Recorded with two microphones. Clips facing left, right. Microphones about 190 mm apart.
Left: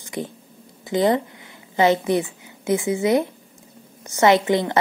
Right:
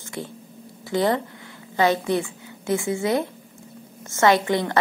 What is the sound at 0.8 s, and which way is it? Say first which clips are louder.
A woman's voice: left 3 dB; 20° left (ahead or behind).